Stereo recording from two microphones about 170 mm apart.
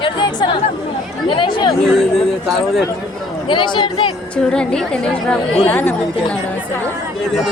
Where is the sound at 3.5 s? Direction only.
25° left (ahead or behind).